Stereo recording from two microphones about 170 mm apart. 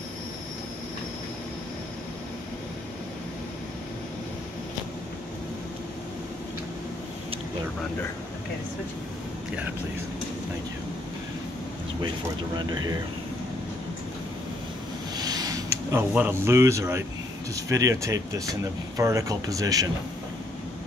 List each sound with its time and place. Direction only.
12.5 s speech: 25° right (ahead or behind)
15.1 s a sound: 20° right (ahead or behind)
17.6 s speech: 20° right (ahead or behind)